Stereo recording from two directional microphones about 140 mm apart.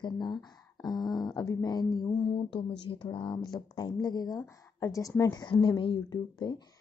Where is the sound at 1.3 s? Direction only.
25° left (ahead or behind).